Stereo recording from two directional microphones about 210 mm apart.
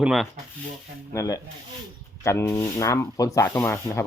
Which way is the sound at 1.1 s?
15° left (ahead or behind).